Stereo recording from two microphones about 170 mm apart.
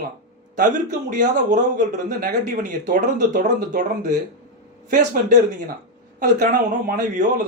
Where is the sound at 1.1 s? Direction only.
45° right (ahead or behind).